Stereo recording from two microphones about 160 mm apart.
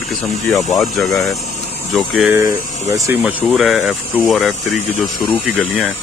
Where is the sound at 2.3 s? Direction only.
20° right (ahead or behind).